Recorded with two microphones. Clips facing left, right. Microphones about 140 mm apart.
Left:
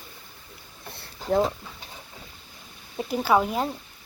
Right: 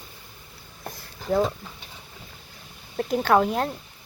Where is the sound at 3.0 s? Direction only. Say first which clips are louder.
Right 2 dB; 5° left (ahead or behind).